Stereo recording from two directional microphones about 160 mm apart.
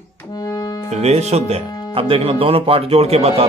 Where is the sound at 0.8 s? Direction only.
45° right (ahead or behind).